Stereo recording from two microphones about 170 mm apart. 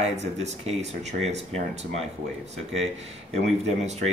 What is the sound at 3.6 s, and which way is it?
Speech, 40° right (ahead or behind).